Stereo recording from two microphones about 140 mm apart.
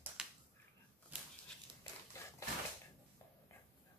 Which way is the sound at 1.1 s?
10° right (ahead or behind).